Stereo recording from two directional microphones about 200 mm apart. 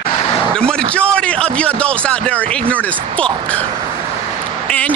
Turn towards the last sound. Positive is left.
turn(degrees=5)  # may be behind; listen again after turning